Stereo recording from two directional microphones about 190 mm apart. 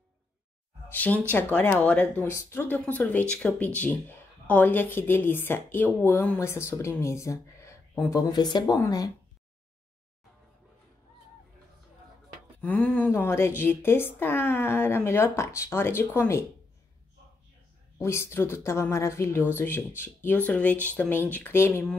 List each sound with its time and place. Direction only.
0.8 s a woman's voice: 10° left (ahead or behind)
12.5 s speech: 10° left (ahead or behind)
17.9 s speech: 15° left (ahead or behind)